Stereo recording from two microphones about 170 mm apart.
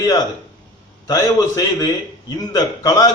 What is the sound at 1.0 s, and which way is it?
A man's voice, 20° left (ahead or behind).